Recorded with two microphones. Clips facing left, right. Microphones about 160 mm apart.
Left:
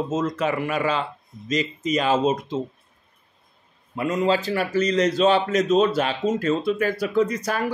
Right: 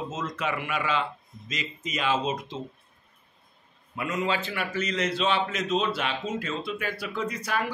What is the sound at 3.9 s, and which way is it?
A man's voice, 35° left (ahead or behind).